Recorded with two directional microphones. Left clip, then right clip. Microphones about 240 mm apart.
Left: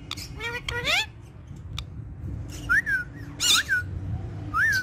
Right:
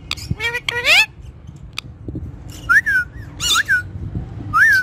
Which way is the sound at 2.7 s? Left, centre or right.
Right.